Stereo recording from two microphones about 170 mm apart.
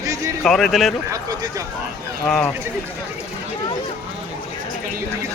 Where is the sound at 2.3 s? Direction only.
5° left (ahead or behind).